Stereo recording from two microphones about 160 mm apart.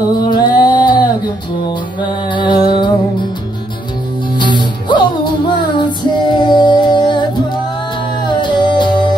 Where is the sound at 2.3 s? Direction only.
30° left (ahead or behind).